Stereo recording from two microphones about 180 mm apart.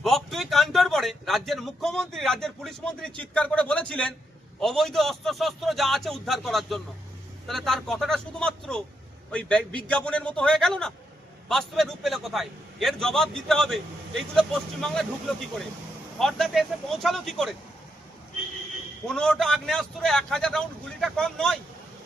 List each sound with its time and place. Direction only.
0.0 s a man's voice: centre (ahead or behind)
16.1 s a man's voice: centre (ahead or behind)
19.0 s a man's voice: 5° left (ahead or behind)